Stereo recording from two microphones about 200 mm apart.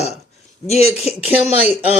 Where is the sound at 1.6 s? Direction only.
10° right (ahead or behind).